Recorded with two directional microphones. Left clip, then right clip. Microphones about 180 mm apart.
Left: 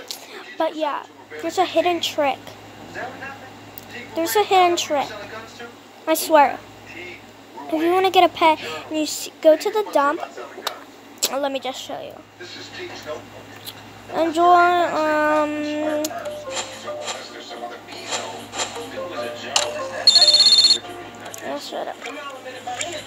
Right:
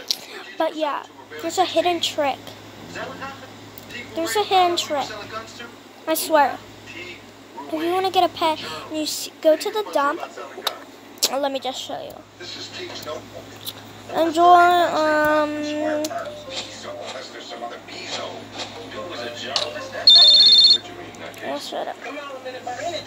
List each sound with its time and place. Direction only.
0.6 s speech: centre (ahead or behind)
4.1 s a woman's voice: 10° left (ahead or behind)
6.0 s a woman's voice: 15° left (ahead or behind)
7.8 s a woman's voice: 20° left (ahead or behind)
10.7 s speech: 5° right (ahead or behind)
13.7 s speech: centre (ahead or behind)
16.4 s music: 35° left (ahead or behind)
18.1 s a sound: 35° left (ahead or behind)
21.5 s a sound: centre (ahead or behind)